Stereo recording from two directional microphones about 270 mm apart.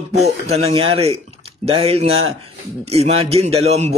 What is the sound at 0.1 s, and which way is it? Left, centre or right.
A man's voice, right.